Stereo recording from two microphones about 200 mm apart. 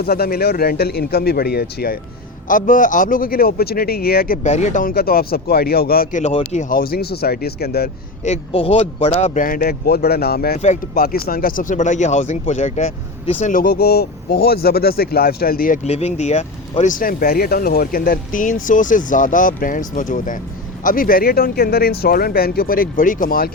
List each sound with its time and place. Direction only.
0.0 s speech: 50° left (ahead or behind)
4.4 s speech: 35° left (ahead or behind); by 7.9 s 50° left (ahead or behind)
8.2 s speech: 30° left (ahead or behind)